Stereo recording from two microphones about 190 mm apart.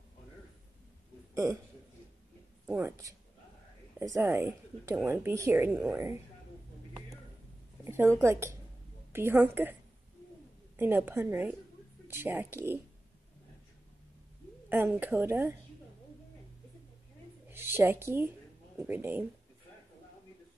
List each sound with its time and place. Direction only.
1.3 s a man's voice: 15° right (ahead or behind)
2.6 s speech: 10° right (ahead or behind)
7.8 s a woman's voice: 15° right (ahead or behind)
10.8 s speech: 10° right (ahead or behind)
14.7 s speech: 10° right (ahead or behind)
17.5 s speech: 10° right (ahead or behind)